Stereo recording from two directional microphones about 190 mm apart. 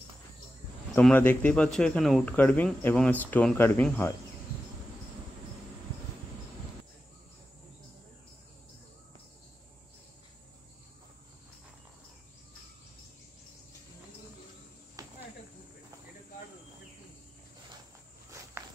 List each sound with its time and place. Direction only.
0.9 s speech: 10° left (ahead or behind)
15.0 s cricket: 20° right (ahead or behind)